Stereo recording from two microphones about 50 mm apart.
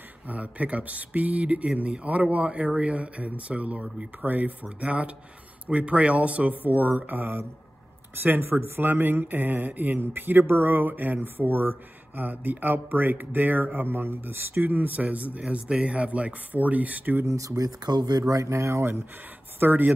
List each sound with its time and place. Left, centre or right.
0.3 s speech: right
6.6 s speech: right
8.2 s speech: right
15.4 s speech: centre; by 17.3 s right
17.3 s speech: right
19.6 s speech: right